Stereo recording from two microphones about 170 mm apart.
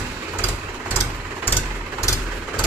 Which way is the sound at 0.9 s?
10° left (ahead or behind).